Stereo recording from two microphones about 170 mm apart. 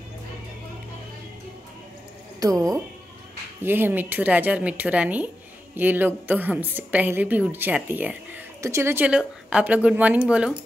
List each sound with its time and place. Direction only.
2.4 s a woman's voice: 20° right (ahead or behind)